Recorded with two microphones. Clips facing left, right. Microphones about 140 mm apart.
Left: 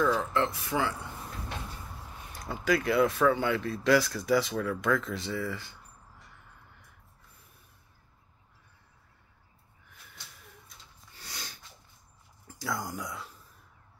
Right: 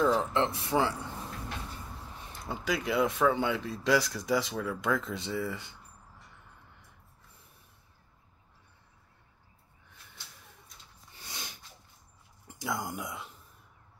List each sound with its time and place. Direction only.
0.0 s speech: 20° right (ahead or behind)
2.4 s speech: 15° right (ahead or behind)
11.1 s snort: 20° right (ahead or behind)
12.4 s speech: 20° right (ahead or behind)